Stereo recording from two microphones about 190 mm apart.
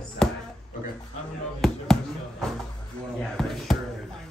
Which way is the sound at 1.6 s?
Centre (ahead or behind).